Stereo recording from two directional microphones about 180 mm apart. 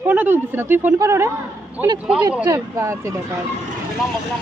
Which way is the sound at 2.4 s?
15° right (ahead or behind).